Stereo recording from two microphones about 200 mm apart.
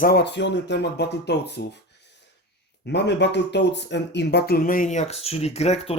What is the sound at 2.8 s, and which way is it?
Speech, 60° left (ahead or behind).